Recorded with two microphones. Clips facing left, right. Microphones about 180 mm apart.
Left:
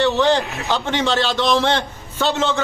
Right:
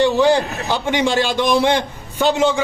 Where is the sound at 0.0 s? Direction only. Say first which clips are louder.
Right 2 dB; 10° right (ahead or behind).